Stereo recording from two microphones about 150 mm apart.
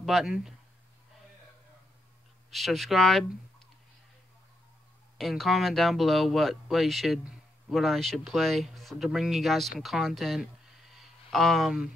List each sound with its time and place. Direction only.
0.0 s speech: centre (ahead or behind)
2.5 s speech: centre (ahead or behind)
5.1 s speech: centre (ahead or behind)
11.0 s a sound: centre (ahead or behind)